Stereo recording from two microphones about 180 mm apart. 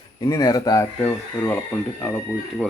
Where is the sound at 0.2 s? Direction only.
20° left (ahead or behind).